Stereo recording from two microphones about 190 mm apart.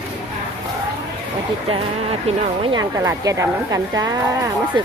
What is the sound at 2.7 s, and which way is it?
A woman's voice, 15° right (ahead or behind).